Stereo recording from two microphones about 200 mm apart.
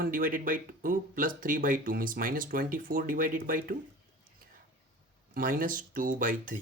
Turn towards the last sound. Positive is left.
turn(degrees=-40)  # may be behind; listen again after turning